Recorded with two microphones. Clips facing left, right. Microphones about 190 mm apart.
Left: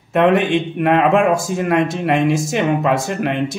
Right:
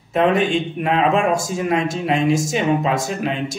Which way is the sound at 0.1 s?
60° left (ahead or behind).